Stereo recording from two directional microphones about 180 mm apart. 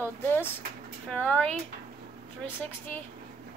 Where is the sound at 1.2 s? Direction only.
5° left (ahead or behind).